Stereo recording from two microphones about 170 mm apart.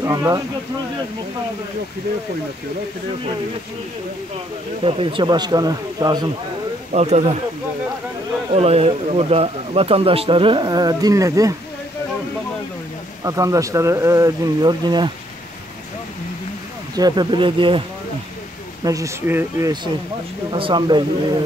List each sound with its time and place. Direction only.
0.0 s speech: 20° right (ahead or behind)
4.8 s speech: 30° right (ahead or behind)
6.9 s speech: 40° right (ahead or behind)
8.5 s speech: 35° right (ahead or behind); by 11.5 s 20° right (ahead or behind)
13.2 s speech: 20° right (ahead or behind)
16.9 s speech: 25° right (ahead or behind)
18.9 s speech: 20° right (ahead or behind)
20.5 s speech: 30° right (ahead or behind)